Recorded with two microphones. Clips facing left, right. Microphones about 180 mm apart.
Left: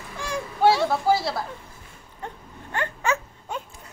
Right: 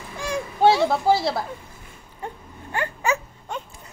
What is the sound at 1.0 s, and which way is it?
Speech, 25° right (ahead or behind).